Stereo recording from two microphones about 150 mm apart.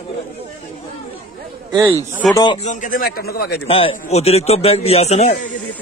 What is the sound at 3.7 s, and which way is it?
A man's voice, 40° left (ahead or behind).